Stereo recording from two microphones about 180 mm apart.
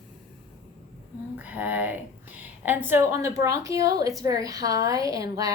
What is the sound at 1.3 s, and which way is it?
A woman's voice, 10° right (ahead or behind).